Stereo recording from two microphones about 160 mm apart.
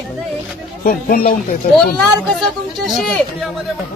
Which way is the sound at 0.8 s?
65° left (ahead or behind).